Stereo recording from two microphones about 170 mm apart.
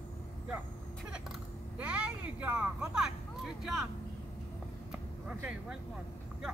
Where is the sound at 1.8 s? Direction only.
5° right (ahead or behind).